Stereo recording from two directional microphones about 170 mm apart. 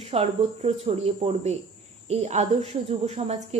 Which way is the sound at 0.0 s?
35° right (ahead or behind).